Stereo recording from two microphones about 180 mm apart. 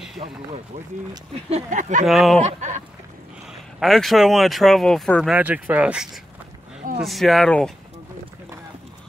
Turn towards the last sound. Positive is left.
turn(degrees=5)  # may be behind; listen again after turning